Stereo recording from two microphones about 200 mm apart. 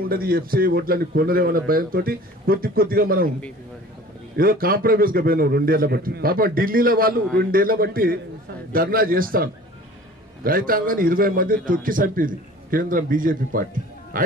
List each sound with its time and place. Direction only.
0.1 s a man's voice: 50° right (ahead or behind)
4.4 s a man's voice: 45° right (ahead or behind)